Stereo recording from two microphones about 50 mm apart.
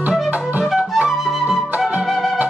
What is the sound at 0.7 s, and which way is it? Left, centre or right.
Flute, centre.